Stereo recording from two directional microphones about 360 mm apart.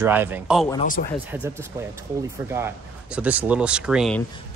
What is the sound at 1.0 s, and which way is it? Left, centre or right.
Speech, left.